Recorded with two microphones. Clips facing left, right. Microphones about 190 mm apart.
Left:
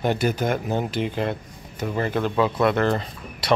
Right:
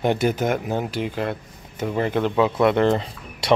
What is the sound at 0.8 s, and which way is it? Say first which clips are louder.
Speech: even; 5° right (ahead or behind).